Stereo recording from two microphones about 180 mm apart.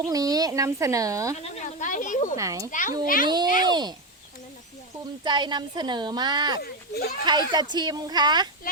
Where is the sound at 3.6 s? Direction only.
25° right (ahead or behind).